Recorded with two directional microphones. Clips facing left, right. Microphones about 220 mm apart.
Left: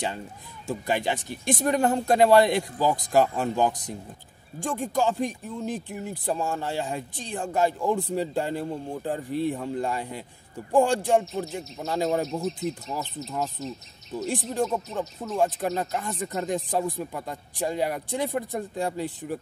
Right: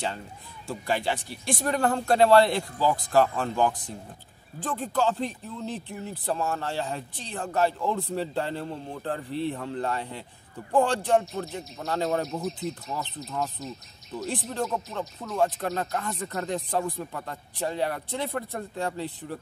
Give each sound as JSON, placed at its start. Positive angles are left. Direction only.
{"t": 0.8, "sound": "speech", "side_deg": 20}